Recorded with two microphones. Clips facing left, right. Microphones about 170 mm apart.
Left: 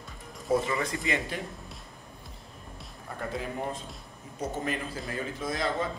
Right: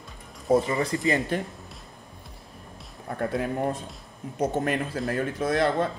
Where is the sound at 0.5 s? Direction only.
35° right (ahead or behind).